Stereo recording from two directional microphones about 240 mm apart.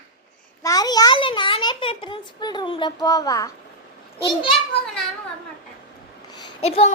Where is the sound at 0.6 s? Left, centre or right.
Centre.